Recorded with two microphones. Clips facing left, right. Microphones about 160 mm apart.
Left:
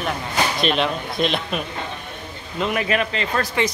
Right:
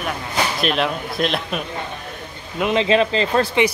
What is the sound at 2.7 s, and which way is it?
Speech, 25° right (ahead or behind).